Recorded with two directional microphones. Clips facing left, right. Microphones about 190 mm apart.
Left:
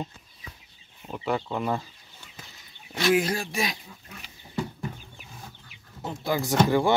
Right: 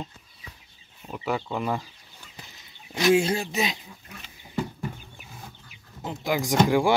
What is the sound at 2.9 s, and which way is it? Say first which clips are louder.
Speech: right 2 dB; 20° right (ahead or behind).